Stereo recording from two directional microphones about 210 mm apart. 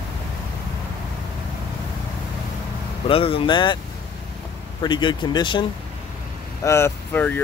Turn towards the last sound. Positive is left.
turn(degrees=10)  # may be behind; listen again after turning